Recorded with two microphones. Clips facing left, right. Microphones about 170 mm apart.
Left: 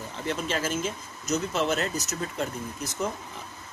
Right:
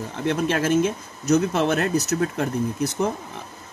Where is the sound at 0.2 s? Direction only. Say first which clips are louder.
Right 7 dB; 65° right (ahead or behind).